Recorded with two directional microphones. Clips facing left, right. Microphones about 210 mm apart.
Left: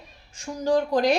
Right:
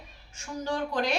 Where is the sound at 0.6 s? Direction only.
40° left (ahead or behind).